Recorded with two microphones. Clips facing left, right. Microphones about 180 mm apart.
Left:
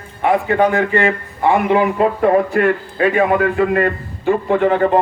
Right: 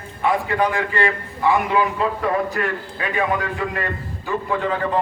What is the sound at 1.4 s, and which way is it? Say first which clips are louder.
Speech: left 5 dB; 30° left (ahead or behind).